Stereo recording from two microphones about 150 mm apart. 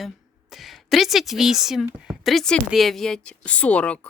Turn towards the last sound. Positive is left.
turn(degrees=10)  # may be behind; listen again after turning